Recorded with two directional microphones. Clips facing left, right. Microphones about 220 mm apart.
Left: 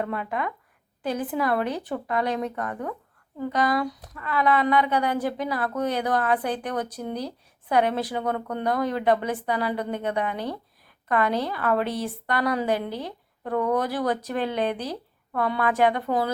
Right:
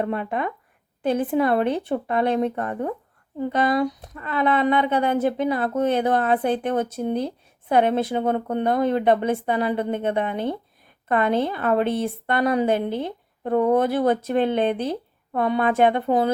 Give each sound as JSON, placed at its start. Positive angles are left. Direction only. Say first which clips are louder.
{"t": 0.0, "sound": "speech", "louder": "right 4 dB", "side_deg": -25}